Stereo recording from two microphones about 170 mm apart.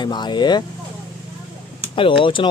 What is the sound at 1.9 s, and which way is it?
Speech, 30° left (ahead or behind).